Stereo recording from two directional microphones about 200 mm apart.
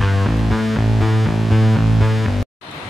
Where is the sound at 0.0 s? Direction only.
Centre (ahead or behind).